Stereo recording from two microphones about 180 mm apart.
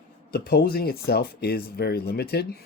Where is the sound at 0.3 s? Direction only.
60° left (ahead or behind).